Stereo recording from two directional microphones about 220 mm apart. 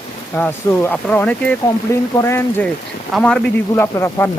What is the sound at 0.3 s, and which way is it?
Speech, 5° left (ahead or behind).